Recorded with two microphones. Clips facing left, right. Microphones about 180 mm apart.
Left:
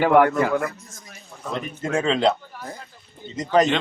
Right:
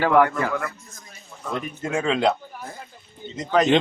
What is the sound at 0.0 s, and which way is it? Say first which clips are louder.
Speech: left 2 dB; 10° left (ahead or behind).